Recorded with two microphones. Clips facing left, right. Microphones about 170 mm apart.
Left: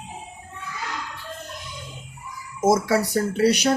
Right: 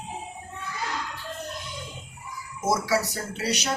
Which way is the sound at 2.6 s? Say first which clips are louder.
Left 5 dB; 50° left (ahead or behind).